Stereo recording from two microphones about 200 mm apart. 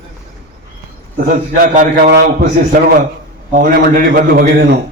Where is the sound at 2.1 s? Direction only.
55° right (ahead or behind).